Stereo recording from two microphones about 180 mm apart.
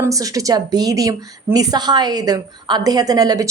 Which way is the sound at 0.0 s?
20° right (ahead or behind).